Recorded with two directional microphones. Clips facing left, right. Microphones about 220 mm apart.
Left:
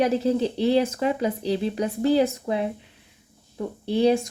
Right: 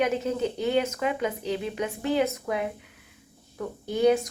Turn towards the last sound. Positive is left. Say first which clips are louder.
# left 2 dB
turn(degrees=30)  # may be behind; listen again after turning